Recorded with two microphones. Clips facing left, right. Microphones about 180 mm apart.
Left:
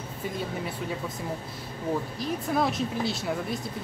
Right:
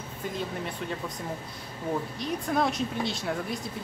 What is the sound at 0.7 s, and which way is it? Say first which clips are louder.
Speech: left 1 dB; 5° left (ahead or behind).